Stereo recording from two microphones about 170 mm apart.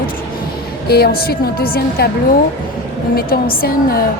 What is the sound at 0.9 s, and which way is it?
A woman's voice, 65° left (ahead or behind).